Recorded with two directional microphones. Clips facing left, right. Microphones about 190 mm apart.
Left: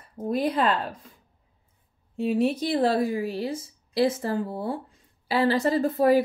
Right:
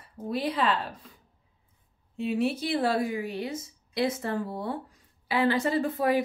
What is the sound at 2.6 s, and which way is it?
A woman's voice, 40° left (ahead or behind).